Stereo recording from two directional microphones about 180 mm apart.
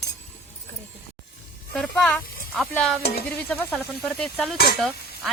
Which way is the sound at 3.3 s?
10° left (ahead or behind).